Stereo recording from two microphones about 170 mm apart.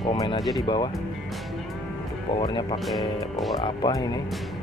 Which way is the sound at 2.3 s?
30° left (ahead or behind).